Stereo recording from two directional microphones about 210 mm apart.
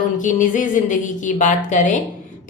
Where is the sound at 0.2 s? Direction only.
35° left (ahead or behind).